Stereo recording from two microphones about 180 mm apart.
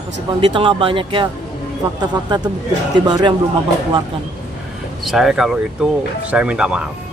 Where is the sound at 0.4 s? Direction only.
25° right (ahead or behind).